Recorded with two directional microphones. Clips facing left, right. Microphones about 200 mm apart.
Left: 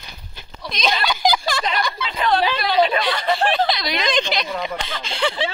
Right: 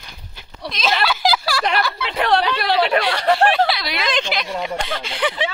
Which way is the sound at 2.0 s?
75° right (ahead or behind).